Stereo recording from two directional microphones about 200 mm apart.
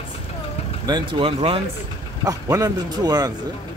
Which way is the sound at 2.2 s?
15° right (ahead or behind).